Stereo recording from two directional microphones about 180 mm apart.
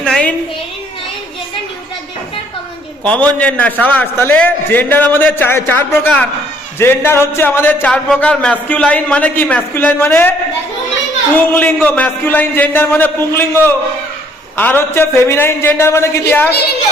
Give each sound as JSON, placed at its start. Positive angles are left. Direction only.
{"t": 0.0, "sound": "a woman's voice", "side_deg": 5}
{"t": 3.0, "sound": "a man's voice", "side_deg": 5}
{"t": 11.3, "sound": "speech", "side_deg": 10}